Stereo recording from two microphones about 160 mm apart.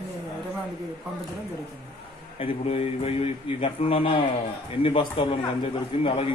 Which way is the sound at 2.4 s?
40° left (ahead or behind).